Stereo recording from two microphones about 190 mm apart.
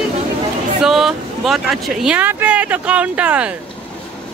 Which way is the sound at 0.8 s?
Centre (ahead or behind).